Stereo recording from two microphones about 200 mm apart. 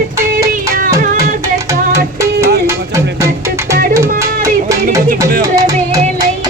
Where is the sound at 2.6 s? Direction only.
15° right (ahead or behind).